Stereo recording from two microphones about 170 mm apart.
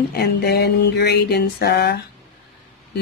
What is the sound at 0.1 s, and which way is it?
Speech, 70° left (ahead or behind).